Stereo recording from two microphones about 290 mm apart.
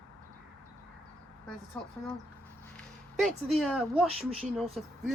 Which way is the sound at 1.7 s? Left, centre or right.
Centre.